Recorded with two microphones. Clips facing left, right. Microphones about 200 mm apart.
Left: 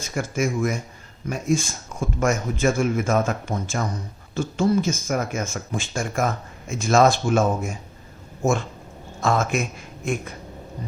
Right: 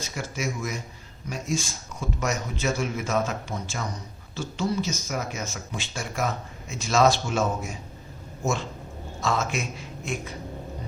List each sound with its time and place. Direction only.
0.0 s speech: 50° left (ahead or behind)
9.2 s speech: 50° left (ahead or behind)